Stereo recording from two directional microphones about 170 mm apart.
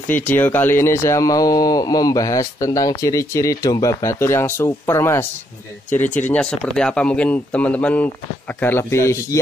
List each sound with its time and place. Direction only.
0.1 s speech: 10° left (ahead or behind)